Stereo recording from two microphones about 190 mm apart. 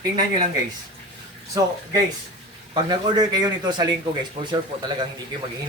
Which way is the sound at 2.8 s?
20° right (ahead or behind).